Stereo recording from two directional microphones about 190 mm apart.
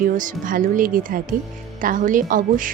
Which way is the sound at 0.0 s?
45° right (ahead or behind).